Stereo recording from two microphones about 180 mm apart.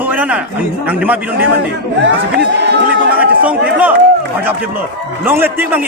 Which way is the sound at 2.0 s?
70° right (ahead or behind).